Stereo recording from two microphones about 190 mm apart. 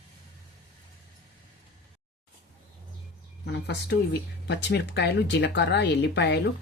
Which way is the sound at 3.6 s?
65° left (ahead or behind).